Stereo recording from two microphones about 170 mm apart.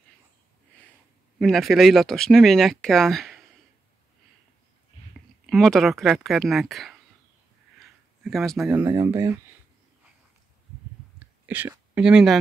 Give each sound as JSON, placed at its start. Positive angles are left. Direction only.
{"t": 1.4, "sound": "speech", "side_deg": 0}
{"t": 5.5, "sound": "speech", "side_deg": 0}
{"t": 7.8, "sound": "a sound", "side_deg": 0}
{"t": 8.7, "sound": "speech", "side_deg": -15}
{"t": 11.4, "sound": "speech", "side_deg": -10}